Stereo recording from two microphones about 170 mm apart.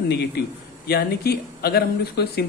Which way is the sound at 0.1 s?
70° left (ahead or behind).